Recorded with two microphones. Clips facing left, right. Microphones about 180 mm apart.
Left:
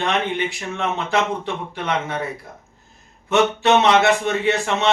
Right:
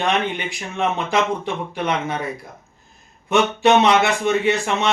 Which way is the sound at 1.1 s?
15° right (ahead or behind).